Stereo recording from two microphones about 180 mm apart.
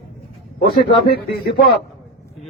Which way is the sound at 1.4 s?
60° left (ahead or behind).